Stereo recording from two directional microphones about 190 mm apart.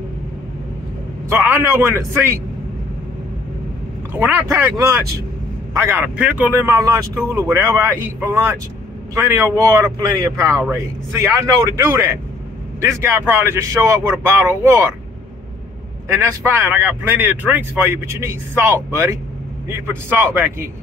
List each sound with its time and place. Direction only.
1.3 s speech: 10° right (ahead or behind)
4.1 s speech: 10° right (ahead or behind)
16.2 s speech: 15° right (ahead or behind)